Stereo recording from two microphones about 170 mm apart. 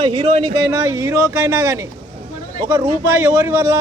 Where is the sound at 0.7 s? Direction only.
15° right (ahead or behind).